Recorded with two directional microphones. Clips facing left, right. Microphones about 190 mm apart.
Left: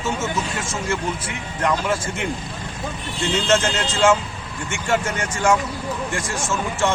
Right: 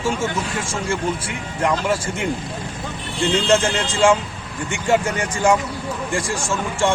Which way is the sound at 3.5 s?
15° right (ahead or behind).